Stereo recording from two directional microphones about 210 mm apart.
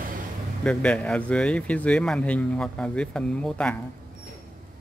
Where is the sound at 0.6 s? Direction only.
5° left (ahead or behind).